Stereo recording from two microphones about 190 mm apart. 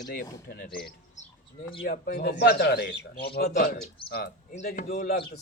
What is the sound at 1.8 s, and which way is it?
A man's voice, 55° left (ahead or behind).